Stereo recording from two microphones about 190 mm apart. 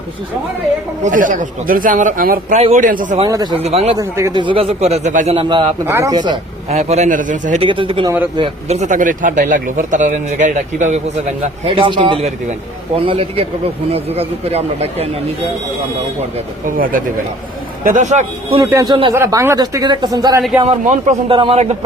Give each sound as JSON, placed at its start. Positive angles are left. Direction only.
{"t": 1.0, "sound": "speech", "side_deg": -40}
{"t": 3.2, "sound": "a man's voice", "side_deg": -20}
{"t": 3.9, "sound": "a man's voice", "side_deg": -20}
{"t": 5.8, "sound": "a man's voice", "side_deg": -15}
{"t": 6.7, "sound": "speech", "side_deg": -35}
{"t": 7.6, "sound": "a man's voice", "side_deg": -25}
{"t": 16.6, "sound": "speech", "side_deg": -45}
{"t": 18.6, "sound": "a man's voice", "side_deg": -20}
{"t": 20.7, "sound": "speech", "side_deg": -40}